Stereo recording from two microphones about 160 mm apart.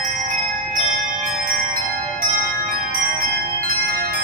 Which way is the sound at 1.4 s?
60° right (ahead or behind).